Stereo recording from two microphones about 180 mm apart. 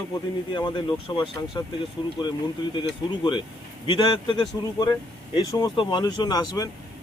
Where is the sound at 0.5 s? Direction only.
25° left (ahead or behind).